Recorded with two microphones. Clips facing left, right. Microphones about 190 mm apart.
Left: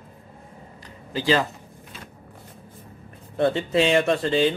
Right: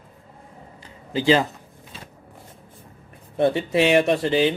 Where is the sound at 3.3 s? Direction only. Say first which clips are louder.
Right 1 dB; 20° right (ahead or behind).